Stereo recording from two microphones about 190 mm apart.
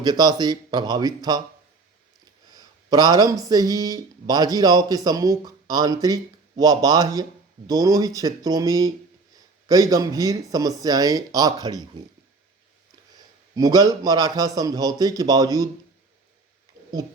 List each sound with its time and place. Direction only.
0.0 s speech: 20° right (ahead or behind)
2.5 s speech: 20° right (ahead or behind)
13.6 s speech: 20° right (ahead or behind)
16.8 s a sound: 20° right (ahead or behind)